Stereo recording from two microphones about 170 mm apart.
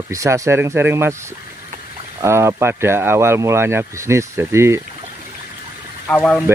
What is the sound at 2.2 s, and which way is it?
Speech, 15° right (ahead or behind).